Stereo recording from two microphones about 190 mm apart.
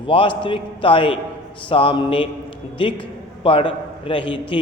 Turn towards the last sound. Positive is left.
turn(degrees=25)  # may be behind; listen again after turning